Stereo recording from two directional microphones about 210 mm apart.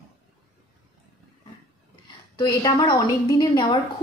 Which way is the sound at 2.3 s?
20° left (ahead or behind).